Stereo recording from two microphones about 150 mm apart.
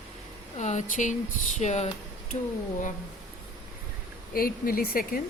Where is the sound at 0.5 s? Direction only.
50° left (ahead or behind).